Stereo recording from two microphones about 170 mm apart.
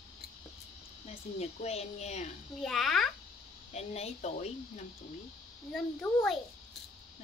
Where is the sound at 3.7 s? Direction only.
40° left (ahead or behind).